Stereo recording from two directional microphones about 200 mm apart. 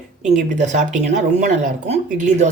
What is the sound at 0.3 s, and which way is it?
Speech, 40° right (ahead or behind).